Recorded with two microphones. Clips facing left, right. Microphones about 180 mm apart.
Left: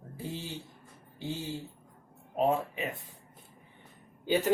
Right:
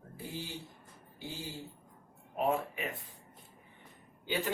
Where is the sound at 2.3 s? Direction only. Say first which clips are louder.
Left 4 dB; 25° left (ahead or behind).